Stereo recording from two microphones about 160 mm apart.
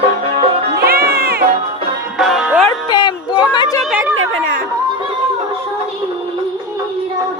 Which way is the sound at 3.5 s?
25° left (ahead or behind).